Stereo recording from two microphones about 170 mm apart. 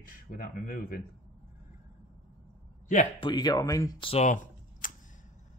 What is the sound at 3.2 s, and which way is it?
Speech, 25° left (ahead or behind).